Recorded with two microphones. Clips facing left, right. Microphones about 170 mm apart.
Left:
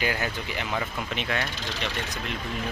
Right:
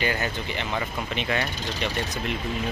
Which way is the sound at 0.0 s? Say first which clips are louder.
Right 1 dB; 5° left (ahead or behind).